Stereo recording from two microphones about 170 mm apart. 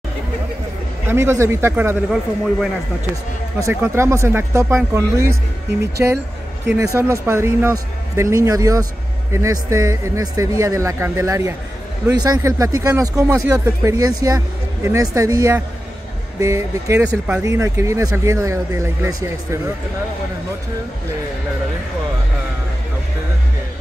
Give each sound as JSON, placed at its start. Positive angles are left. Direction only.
{"t": 1.0, "sound": "speech", "side_deg": -15}
{"t": 3.5, "sound": "speech", "side_deg": -15}